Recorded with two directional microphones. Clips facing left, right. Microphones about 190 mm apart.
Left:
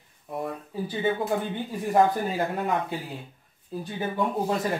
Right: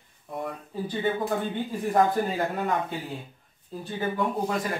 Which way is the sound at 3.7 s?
15° left (ahead or behind).